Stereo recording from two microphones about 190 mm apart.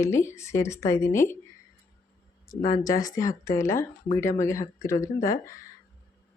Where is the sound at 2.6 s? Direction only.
45° left (ahead or behind).